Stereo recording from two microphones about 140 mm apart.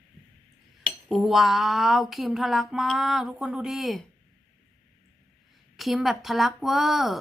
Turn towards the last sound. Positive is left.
turn(degrees=0)  # may be behind; listen again after turning